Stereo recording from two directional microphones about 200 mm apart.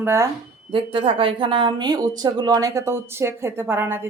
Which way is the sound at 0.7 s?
25° right (ahead or behind).